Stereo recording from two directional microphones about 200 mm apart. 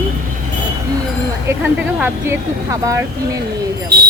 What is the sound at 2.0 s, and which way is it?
Speech, 15° right (ahead or behind).